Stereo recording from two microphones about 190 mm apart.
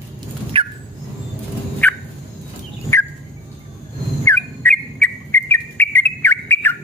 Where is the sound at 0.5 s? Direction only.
30° right (ahead or behind).